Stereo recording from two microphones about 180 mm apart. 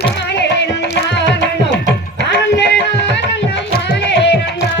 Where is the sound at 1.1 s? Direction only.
75° left (ahead or behind).